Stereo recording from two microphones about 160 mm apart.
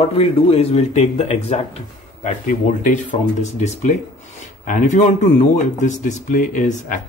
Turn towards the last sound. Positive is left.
turn(degrees=55)  # may be behind; listen again after turning